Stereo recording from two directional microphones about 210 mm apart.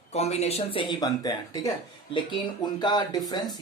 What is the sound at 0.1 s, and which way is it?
Speech, 30° left (ahead or behind).